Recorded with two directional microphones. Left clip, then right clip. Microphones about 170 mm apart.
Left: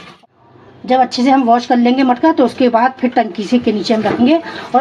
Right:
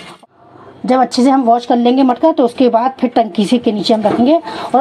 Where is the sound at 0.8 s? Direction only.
30° right (ahead or behind).